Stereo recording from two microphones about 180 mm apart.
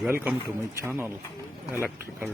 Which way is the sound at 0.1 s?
10° right (ahead or behind).